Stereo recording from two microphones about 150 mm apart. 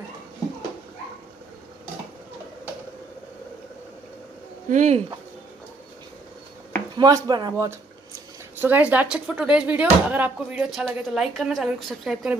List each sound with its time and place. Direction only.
4.6 s speech: 55° right (ahead or behind)
7.0 s speech: 30° right (ahead or behind)
8.5 s speech: 10° right (ahead or behind)